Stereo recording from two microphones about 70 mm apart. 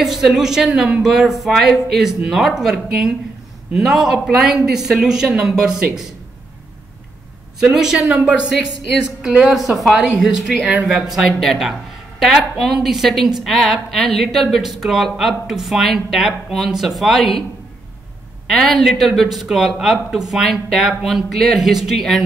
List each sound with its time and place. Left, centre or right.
0.0 s speech: centre
7.6 s speech: centre
10.6 s speech: centre
10.9 s speech: centre
18.5 s speech: centre